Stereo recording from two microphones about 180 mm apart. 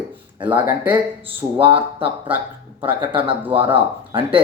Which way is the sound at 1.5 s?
30° right (ahead or behind).